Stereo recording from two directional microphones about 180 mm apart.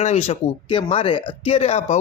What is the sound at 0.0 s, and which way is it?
Speech, 40° left (ahead or behind).